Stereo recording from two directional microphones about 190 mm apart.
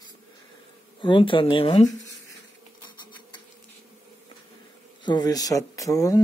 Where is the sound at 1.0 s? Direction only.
25° left (ahead or behind).